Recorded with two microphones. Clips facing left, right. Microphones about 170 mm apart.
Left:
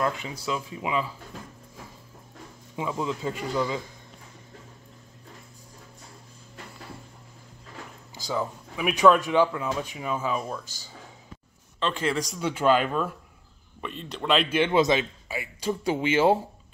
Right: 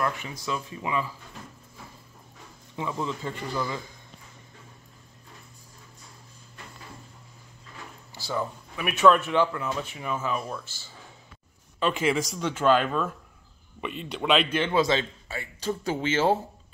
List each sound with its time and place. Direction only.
0.0 s speech: 15° left (ahead or behind)
2.7 s speech: 15° left (ahead or behind)
8.1 s speech: 15° left (ahead or behind)
11.8 s speech: 5° right (ahead or behind)
12.4 s speech: 10° left (ahead or behind)
13.7 s speech: 5° right (ahead or behind); by 16.3 s 15° left (ahead or behind)